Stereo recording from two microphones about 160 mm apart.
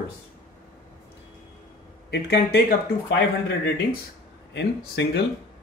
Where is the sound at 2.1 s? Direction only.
90° left.